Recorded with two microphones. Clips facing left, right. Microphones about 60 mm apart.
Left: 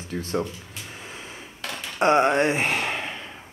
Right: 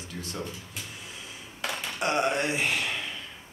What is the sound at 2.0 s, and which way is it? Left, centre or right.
Speech, left.